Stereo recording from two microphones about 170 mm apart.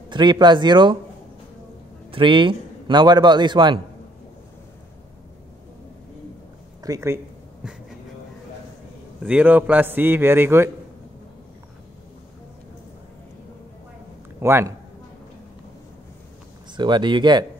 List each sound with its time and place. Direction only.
0.1 s a man's voice: 25° right (ahead or behind)
2.0 s a man's voice: 30° right (ahead or behind)
6.8 s speech: 20° right (ahead or behind)
9.2 s a man's voice: 10° right (ahead or behind)
14.4 s a man's voice: 15° right (ahead or behind)
16.7 s a man's voice: 25° right (ahead or behind)